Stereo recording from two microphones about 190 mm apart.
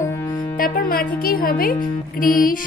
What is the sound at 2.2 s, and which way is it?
Speech, 45° left (ahead or behind).